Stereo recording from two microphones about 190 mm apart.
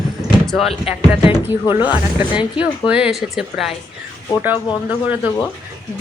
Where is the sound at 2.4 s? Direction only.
5° right (ahead or behind).